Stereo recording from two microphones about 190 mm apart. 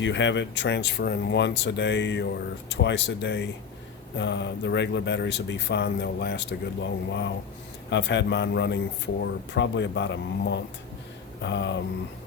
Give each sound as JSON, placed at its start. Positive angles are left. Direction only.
{"t": 0.0, "sound": "speech", "side_deg": 70}